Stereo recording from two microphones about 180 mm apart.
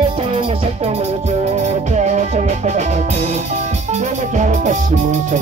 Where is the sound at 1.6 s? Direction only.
40° right (ahead or behind).